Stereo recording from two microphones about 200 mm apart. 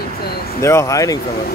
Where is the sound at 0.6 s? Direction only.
15° left (ahead or behind).